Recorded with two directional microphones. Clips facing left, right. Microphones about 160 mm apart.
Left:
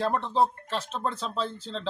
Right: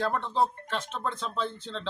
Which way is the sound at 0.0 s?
30° left (ahead or behind).